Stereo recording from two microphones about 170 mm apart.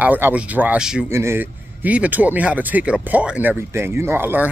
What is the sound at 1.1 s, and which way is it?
Speech, 15° right (ahead or behind).